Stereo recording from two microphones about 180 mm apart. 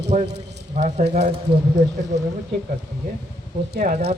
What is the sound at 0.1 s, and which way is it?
A man's voice, 40° right (ahead or behind).